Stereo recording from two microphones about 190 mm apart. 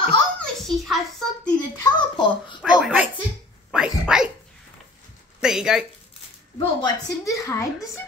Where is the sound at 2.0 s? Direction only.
25° left (ahead or behind).